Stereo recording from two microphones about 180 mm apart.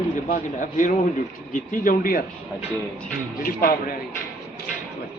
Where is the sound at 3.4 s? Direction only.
50° left (ahead or behind).